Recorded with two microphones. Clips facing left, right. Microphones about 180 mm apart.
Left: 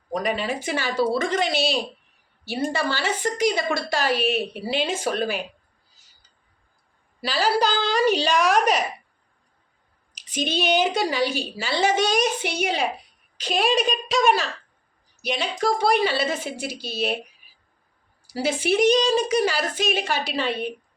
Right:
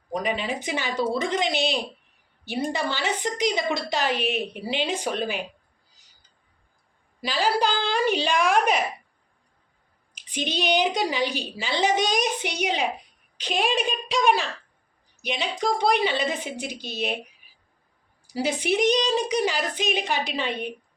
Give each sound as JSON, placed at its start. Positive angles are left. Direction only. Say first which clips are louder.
{"t": 0.3, "sound": "a woman's voice", "louder": "left 2 dB", "side_deg": -20}
{"t": 2.7, "sound": "a woman's voice", "louder": "left 2 dB", "side_deg": -20}
{"t": 7.2, "sound": "a woman's voice", "louder": "left 2 dB", "side_deg": -15}
{"t": 7.4, "sound": "a woman's voice", "louder": "left 2 dB", "side_deg": 40}
{"t": 10.2, "sound": "a sound", "louder": "left 3 dB", "side_deg": 40}
{"t": 10.5, "sound": "a woman's voice", "louder": "left 2 dB", "side_deg": -15}
{"t": 13.6, "sound": "a woman's voice", "louder": "left 3 dB", "side_deg": 40}
{"t": 14.2, "sound": "a woman's voice", "louder": "left 1 dB", "side_deg": -15}
{"t": 18.3, "sound": "a woman's voice", "louder": "left 2 dB", "side_deg": -15}